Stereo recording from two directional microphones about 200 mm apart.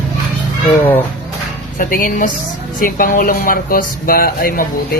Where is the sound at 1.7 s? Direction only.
45° left (ahead or behind).